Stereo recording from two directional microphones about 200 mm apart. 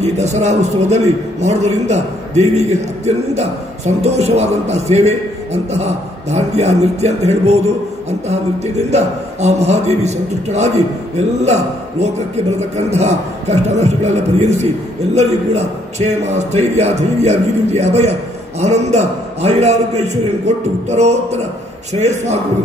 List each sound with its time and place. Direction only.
0.0 s a man's voice: 35° right (ahead or behind)
8.9 s a man's voice: 35° right (ahead or behind)